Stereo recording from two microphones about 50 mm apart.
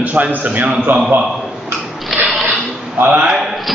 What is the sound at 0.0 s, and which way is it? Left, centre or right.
Speech, right.